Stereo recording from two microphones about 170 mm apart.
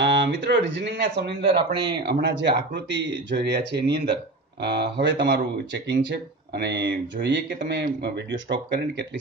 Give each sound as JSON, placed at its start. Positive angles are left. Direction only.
{"t": 0.0, "sound": "speech", "side_deg": -90}
{"t": 1.4, "sound": "speech", "side_deg": -30}
{"t": 2.0, "sound": "speech", "side_deg": -80}
{"t": 6.5, "sound": "speech", "side_deg": -80}
{"t": 7.6, "sound": "speech", "side_deg": -75}